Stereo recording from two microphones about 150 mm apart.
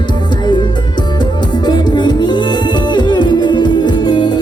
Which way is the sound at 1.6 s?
30° left (ahead or behind).